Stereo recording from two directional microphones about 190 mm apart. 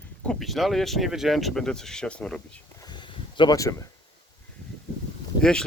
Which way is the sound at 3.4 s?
20° left (ahead or behind).